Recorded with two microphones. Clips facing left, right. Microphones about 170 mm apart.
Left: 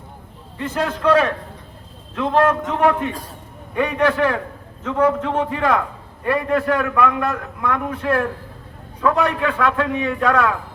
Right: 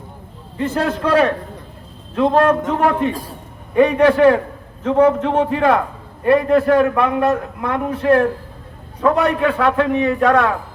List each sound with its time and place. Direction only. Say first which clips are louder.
0.6 s a man's voice: right 2 dB; 30° right (ahead or behind)